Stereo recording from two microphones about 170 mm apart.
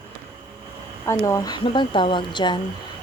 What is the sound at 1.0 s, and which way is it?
Speech, 20° left (ahead or behind).